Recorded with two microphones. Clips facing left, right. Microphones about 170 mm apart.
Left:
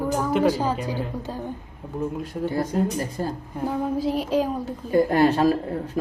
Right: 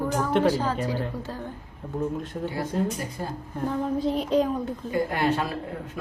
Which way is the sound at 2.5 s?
40° left (ahead or behind).